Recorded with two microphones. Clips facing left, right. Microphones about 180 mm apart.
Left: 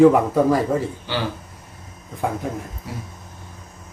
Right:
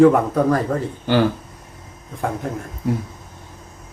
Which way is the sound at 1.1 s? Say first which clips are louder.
Right 12 dB; 50° right (ahead or behind).